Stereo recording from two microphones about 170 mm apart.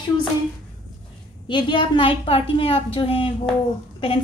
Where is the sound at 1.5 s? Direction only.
30° left (ahead or behind).